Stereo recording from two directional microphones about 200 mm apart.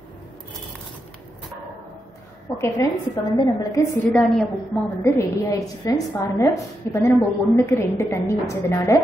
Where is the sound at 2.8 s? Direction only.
15° left (ahead or behind).